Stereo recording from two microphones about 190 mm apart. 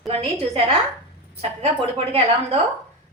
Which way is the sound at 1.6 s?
30° right (ahead or behind).